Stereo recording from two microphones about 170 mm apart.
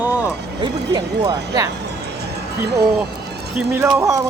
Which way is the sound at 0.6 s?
25° right (ahead or behind).